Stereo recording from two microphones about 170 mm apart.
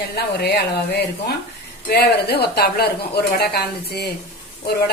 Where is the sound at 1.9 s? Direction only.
70° left (ahead or behind).